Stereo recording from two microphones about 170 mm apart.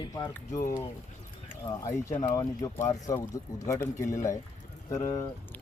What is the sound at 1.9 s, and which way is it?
Speech, 15° left (ahead or behind).